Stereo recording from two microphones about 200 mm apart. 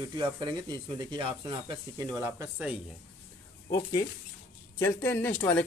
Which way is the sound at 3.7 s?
15° left (ahead or behind).